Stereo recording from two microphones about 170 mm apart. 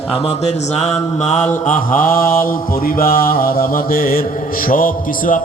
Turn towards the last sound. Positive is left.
turn(degrees=55)  # may be behind; listen again after turning